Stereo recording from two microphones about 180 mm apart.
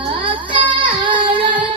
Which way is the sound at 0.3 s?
25° right (ahead or behind).